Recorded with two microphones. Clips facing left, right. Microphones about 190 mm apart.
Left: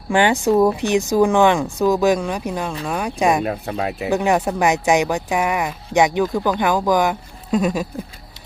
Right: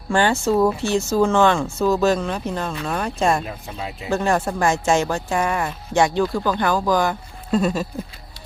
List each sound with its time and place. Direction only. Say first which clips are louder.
0.1 s speech: left 2 dB; 15° left (ahead or behind)
3.4 s speech: left 8 dB; 65° left (ahead or behind)
4.1 s speech: left 1 dB; 15° left (ahead or behind)